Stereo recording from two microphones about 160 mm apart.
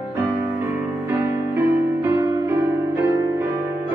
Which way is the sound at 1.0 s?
15° right (ahead or behind).